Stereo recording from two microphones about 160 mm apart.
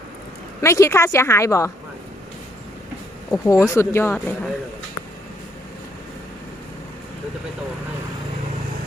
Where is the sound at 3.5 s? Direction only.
20° left (ahead or behind).